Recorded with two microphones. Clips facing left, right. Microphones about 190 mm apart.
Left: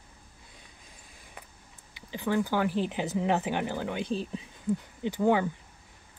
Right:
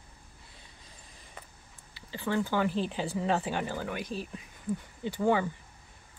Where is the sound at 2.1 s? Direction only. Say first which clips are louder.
Left 2 dB; 15° left (ahead or behind).